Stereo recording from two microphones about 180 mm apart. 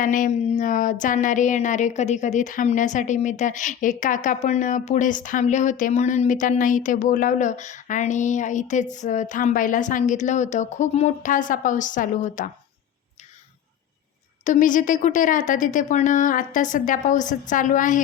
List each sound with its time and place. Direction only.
0.0 s speech: 45° left (ahead or behind)
14.4 s speech: 45° left (ahead or behind)